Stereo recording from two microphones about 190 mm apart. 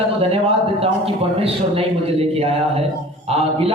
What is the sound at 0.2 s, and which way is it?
A man's voice, 30° right (ahead or behind).